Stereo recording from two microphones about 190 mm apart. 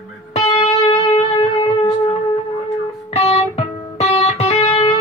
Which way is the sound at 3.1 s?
35° left (ahead or behind).